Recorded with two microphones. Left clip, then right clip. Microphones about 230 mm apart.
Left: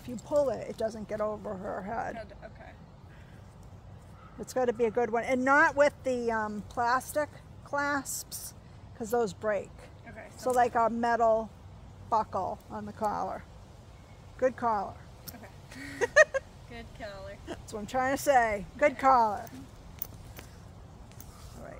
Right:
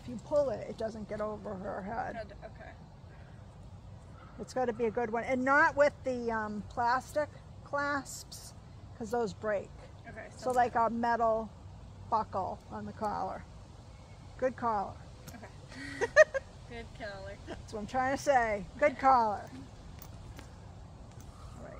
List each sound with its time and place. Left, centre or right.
0.3 s speech: left
2.1 s speech: centre
4.4 s speech: left
10.0 s speech: centre
10.4 s speech: left
14.4 s speech: left
16.0 s a sound: left
16.7 s speech: centre
17.5 s speech: left